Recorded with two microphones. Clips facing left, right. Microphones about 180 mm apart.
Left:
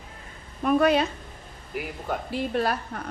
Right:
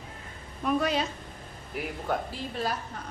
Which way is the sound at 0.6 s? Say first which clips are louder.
Left 6 dB; 60° left (ahead or behind).